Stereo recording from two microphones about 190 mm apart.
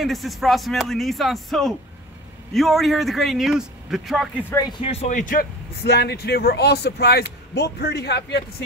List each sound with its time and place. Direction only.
0.0 s a man's voice: centre (ahead or behind)
4.5 s speech: 20° left (ahead or behind); by 8.5 s 60° left (ahead or behind)